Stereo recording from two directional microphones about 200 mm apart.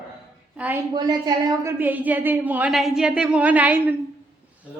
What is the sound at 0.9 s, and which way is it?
A woman's voice, 20° right (ahead or behind).